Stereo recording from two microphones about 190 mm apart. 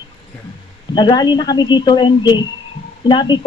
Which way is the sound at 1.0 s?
20° left (ahead or behind).